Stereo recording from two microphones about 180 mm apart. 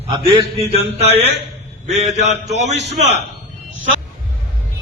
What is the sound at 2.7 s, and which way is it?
Speech, 75° right (ahead or behind).